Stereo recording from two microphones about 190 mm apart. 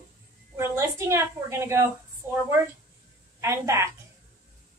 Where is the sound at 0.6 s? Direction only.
15° right (ahead or behind).